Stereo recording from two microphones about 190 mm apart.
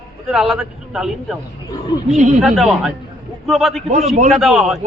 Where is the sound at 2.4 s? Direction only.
Centre (ahead or behind).